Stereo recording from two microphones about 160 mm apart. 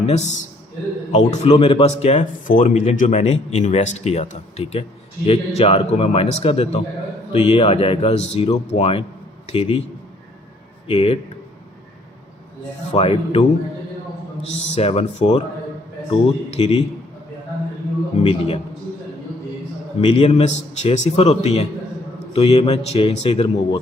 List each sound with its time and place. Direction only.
0.0 s a man's voice: 45° left (ahead or behind)
1.5 s speech: 35° left (ahead or behind)
10.8 s speech: 35° left (ahead or behind)
12.9 s speech: 40° left (ahead or behind)
14.7 s speech: 40° left (ahead or behind)
18.2 s speech: 35° left (ahead or behind)
20.0 s speech: 35° left (ahead or behind)